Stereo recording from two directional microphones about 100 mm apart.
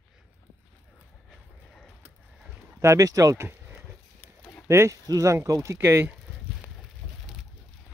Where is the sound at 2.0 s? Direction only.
25° right (ahead or behind).